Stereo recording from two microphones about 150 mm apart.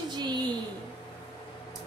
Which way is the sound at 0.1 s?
30° right (ahead or behind).